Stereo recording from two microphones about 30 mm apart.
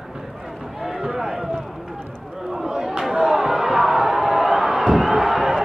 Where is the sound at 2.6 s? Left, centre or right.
Centre.